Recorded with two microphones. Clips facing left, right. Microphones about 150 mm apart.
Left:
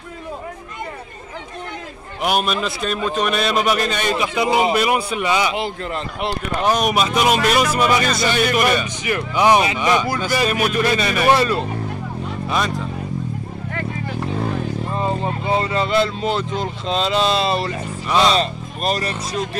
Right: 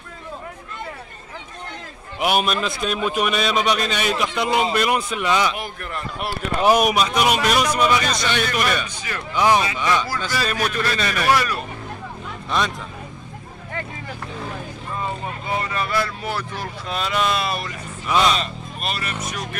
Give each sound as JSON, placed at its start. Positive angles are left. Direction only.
{"t": 2.2, "sound": "a man's voice", "side_deg": 0}
{"t": 5.5, "sound": "speech", "side_deg": 20}
{"t": 6.6, "sound": "speech", "side_deg": -5}
{"t": 11.2, "sound": "speech", "side_deg": 25}
{"t": 12.4, "sound": "speech", "side_deg": 0}
{"t": 15.0, "sound": "speech", "side_deg": 30}
{"t": 18.0, "sound": "speech", "side_deg": 0}
{"t": 18.3, "sound": "speech", "side_deg": 35}